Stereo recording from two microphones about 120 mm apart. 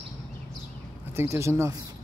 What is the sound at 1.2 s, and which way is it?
Speech, 25° right (ahead or behind).